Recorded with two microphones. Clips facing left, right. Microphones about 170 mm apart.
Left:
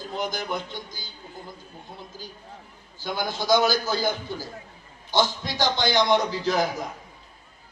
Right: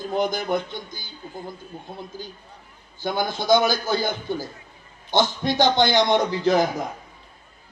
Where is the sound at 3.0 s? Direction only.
55° right (ahead or behind).